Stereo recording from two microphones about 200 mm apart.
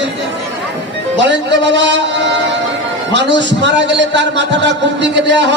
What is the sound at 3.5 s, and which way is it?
A man's voice, 60° right (ahead or behind).